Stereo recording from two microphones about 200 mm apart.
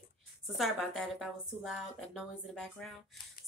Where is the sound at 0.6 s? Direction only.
Centre (ahead or behind).